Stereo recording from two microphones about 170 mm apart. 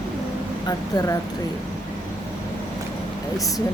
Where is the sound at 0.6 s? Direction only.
20° left (ahead or behind).